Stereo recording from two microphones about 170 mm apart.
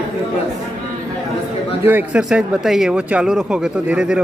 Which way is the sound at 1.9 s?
10° right (ahead or behind).